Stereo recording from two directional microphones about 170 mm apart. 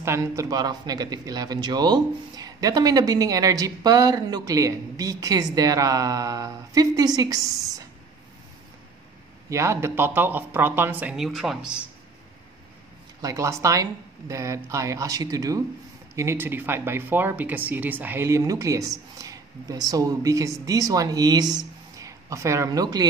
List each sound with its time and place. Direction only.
0.0 s speech: 15° right (ahead or behind)
9.5 s speech: 15° right (ahead or behind)
13.2 s speech: 20° right (ahead or behind)